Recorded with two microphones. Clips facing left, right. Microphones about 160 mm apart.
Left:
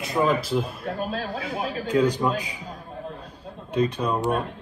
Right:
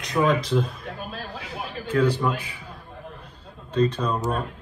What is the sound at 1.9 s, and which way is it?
Speech, 15° left (ahead or behind).